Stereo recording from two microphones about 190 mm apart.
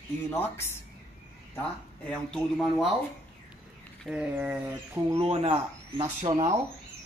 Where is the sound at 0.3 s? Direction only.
15° left (ahead or behind).